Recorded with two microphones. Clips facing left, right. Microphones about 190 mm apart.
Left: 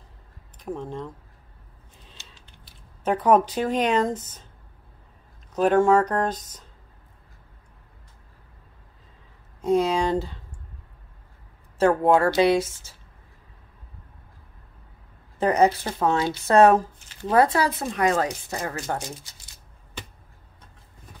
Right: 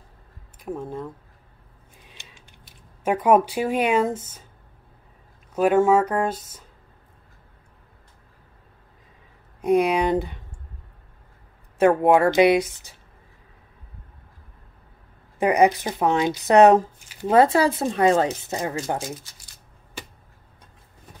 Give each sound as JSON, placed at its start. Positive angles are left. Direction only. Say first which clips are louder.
{"t": 0.6, "sound": "speech", "louder": "right 1 dB", "side_deg": -5}
{"t": 2.0, "sound": "a sound", "louder": "right 1 dB", "side_deg": -10}
{"t": 3.0, "sound": "speech", "louder": "right 1 dB", "side_deg": -10}
{"t": 5.5, "sound": "speech", "louder": "right 1 dB", "side_deg": -10}
{"t": 9.6, "sound": "speech", "louder": "right 2 dB", "side_deg": -15}
{"t": 11.8, "sound": "speech", "louder": "right 2 dB", "side_deg": -20}
{"t": 15.3, "sound": "speech", "louder": "right 2 dB", "side_deg": -10}